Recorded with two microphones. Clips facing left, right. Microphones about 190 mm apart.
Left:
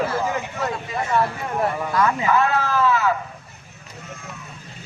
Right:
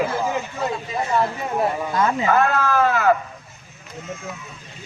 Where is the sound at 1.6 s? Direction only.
25° right (ahead or behind).